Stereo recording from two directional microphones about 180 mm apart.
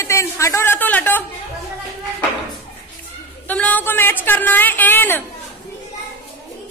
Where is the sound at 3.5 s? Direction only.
10° left (ahead or behind).